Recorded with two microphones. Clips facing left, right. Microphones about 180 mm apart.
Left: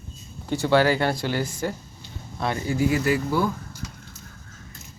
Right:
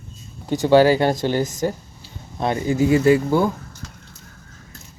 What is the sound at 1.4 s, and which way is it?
Speech, 40° right (ahead or behind).